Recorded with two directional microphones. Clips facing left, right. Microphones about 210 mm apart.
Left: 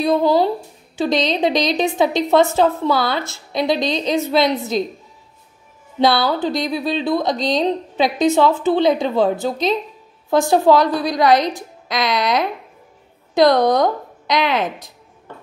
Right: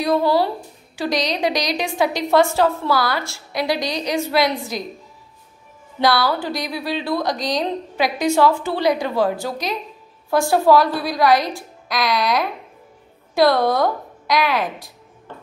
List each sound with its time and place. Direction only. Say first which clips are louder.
0.0 s a woman's voice: left 2 dB; 20° left (ahead or behind)
5.9 s a woman's voice: left 2 dB; 25° left (ahead or behind)